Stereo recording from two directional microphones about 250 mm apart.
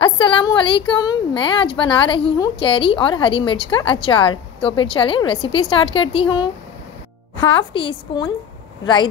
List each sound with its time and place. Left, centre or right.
0.0 s a woman's voice: centre
7.7 s a woman's voice: left